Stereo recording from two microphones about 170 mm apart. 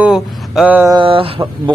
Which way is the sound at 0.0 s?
5° right (ahead or behind).